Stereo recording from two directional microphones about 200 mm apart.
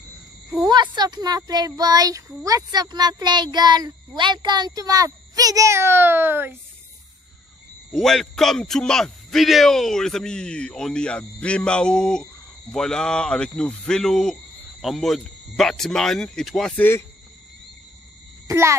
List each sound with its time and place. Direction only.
0.7 s speech: 20° right (ahead or behind)
7.9 s a man's voice: centre (ahead or behind)
18.5 s a child's voice: 15° right (ahead or behind)